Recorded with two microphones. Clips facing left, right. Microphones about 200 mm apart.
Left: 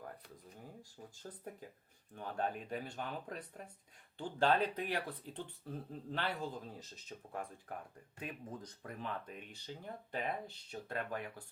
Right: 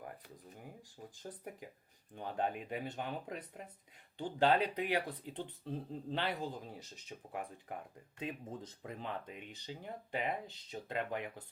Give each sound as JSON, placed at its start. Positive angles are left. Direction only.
{"t": 0.6, "sound": "speech", "side_deg": -15}
{"t": 8.2, "sound": "speech", "side_deg": -25}